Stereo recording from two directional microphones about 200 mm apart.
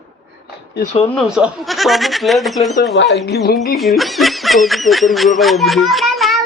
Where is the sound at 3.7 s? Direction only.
Centre (ahead or behind).